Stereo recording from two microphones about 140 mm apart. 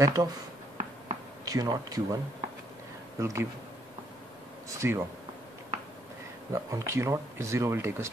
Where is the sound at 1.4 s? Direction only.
25° right (ahead or behind).